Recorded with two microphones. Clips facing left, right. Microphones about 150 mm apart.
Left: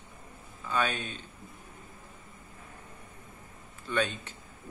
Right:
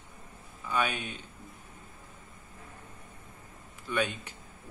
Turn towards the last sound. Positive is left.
turn(degrees=-10)  # may be behind; listen again after turning